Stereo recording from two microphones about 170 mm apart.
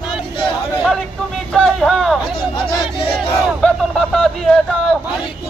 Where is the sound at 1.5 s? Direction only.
Centre (ahead or behind).